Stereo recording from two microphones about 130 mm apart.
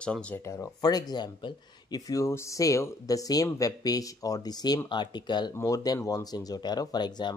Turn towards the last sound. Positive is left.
turn(degrees=35)  # may be behind; listen again after turning